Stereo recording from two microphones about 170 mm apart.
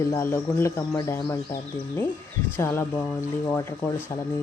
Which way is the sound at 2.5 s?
15° left (ahead or behind).